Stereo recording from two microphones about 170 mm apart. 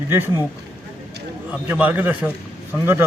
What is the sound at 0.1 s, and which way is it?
Speech, 15° right (ahead or behind).